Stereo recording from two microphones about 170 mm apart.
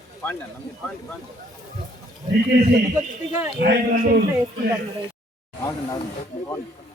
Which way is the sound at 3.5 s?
70° right (ahead or behind).